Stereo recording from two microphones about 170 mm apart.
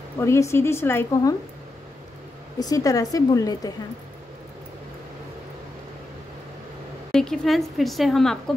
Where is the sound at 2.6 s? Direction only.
20° left (ahead or behind).